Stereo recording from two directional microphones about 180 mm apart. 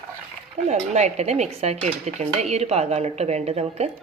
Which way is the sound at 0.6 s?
40° right (ahead or behind).